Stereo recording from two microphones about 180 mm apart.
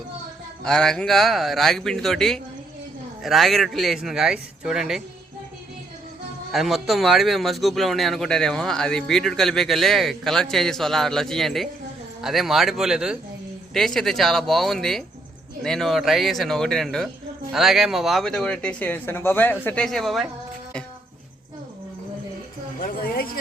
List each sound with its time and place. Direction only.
0.6 s speech: 5° left (ahead or behind)
6.5 s speech: centre (ahead or behind)
22.8 s speech: 50° left (ahead or behind)